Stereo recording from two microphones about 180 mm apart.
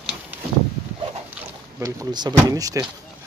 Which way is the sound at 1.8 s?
15° right (ahead or behind).